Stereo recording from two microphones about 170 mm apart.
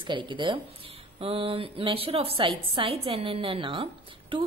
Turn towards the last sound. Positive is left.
turn(degrees=-30)  # may be behind; listen again after turning